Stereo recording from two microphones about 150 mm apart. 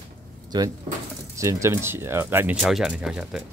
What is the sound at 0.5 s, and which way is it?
Speech, 25° right (ahead or behind).